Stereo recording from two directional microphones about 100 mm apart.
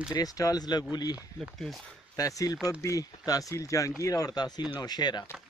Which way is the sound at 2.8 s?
35° left (ahead or behind).